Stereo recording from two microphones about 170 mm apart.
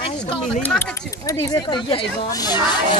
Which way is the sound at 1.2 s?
20° left (ahead or behind).